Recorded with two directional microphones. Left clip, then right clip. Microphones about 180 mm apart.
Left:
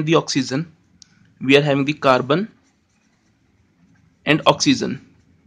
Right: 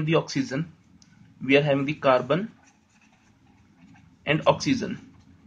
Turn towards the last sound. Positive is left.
turn(degrees=45)  # may be behind; listen again after turning